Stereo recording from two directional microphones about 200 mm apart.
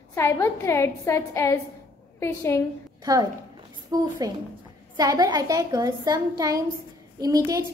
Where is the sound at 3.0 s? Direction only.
20° right (ahead or behind).